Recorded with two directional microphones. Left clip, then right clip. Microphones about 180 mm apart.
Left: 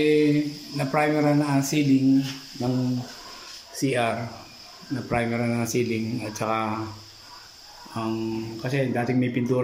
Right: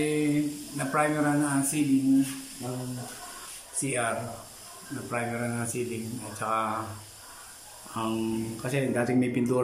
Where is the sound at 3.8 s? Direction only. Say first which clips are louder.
Left 6 dB; 20° left (ahead or behind).